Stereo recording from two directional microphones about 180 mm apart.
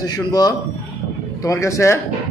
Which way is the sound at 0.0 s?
20° left (ahead or behind).